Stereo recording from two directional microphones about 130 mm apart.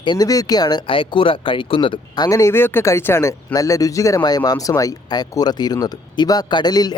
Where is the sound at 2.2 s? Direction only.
25° left (ahead or behind).